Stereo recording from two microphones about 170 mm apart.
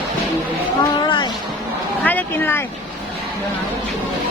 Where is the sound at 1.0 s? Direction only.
25° left (ahead or behind).